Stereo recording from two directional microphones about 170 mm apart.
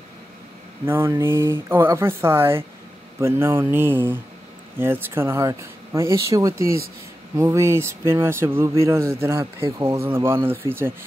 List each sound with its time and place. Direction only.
0.8 s speech: 15° right (ahead or behind)